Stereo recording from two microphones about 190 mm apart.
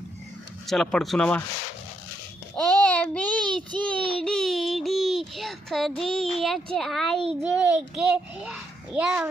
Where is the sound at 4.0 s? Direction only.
25° right (ahead or behind).